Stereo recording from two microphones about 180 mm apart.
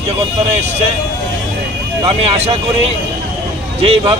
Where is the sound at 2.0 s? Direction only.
35° right (ahead or behind).